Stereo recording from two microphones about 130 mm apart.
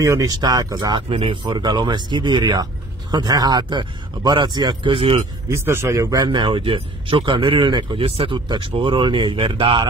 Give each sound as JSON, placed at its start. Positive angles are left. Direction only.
{"t": 0.0, "sound": "speech", "side_deg": -25}
{"t": 1.0, "sound": "speech", "side_deg": -40}
{"t": 5.5, "sound": "speech", "side_deg": -20}